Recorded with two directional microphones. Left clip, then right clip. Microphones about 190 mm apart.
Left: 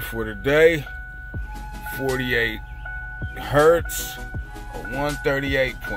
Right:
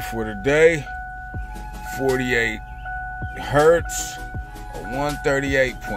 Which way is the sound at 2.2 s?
10° right (ahead or behind).